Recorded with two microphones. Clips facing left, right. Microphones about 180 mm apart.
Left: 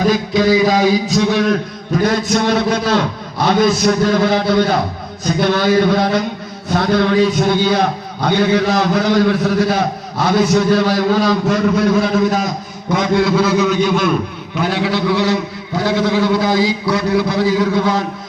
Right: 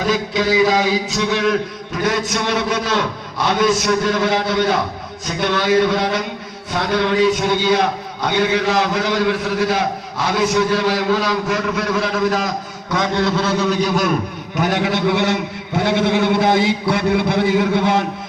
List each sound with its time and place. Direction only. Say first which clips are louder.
0.0 s a man's voice: left 4 dB; 35° left (ahead or behind)
12.9 s a man's voice: left 4 dB; 10° left (ahead or behind)
13.6 s a man's voice: left 3 dB; 35° right (ahead or behind)
14.6 s a man's voice: left 1 dB; 50° right (ahead or behind)